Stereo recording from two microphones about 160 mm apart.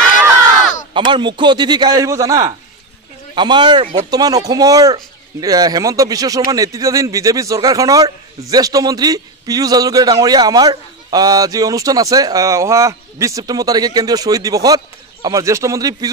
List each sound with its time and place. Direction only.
0.9 s a man's voice: 30° right (ahead or behind)
3.8 s speech: 45° right (ahead or behind)
4.1 s a man's voice: 25° right (ahead or behind)